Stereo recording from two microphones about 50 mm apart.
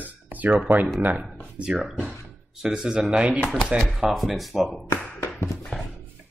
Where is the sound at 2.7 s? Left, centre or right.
Centre.